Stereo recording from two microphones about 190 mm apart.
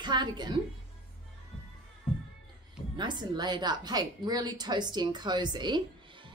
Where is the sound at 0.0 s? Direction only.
25° right (ahead or behind).